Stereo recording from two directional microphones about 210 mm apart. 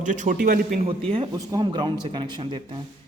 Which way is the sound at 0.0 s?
35° right (ahead or behind).